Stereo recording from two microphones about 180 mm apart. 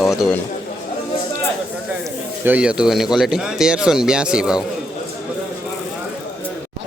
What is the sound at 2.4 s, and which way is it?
Speech, 10° right (ahead or behind).